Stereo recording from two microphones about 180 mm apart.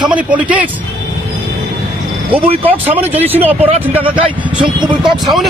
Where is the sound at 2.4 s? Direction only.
30° right (ahead or behind).